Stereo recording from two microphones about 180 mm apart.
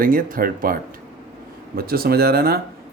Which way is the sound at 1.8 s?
55° right (ahead or behind).